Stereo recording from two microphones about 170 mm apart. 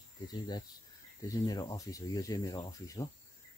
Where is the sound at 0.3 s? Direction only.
25° left (ahead or behind).